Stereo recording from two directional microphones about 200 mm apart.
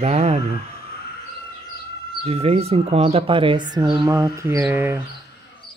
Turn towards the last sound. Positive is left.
turn(degrees=-10)  # may be behind; listen again after turning